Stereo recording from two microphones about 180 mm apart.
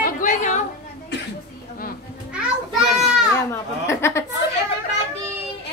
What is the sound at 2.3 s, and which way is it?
Children playing, 5° right (ahead or behind).